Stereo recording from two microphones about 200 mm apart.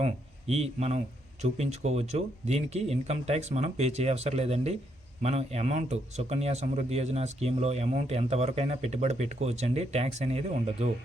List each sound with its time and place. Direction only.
0.0 s a man's voice: 30° right (ahead or behind)